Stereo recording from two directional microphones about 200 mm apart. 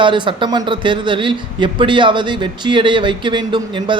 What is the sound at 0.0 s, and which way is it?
A man's voice, 25° right (ahead or behind).